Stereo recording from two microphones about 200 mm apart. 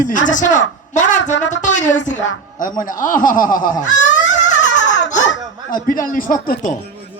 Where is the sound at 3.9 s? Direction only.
40° left (ahead or behind).